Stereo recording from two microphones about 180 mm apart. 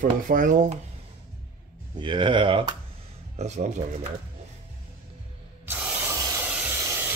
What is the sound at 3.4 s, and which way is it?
Speech, 40° right (ahead or behind).